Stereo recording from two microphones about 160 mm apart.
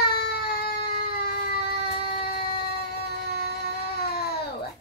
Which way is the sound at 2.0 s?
75° left (ahead or behind).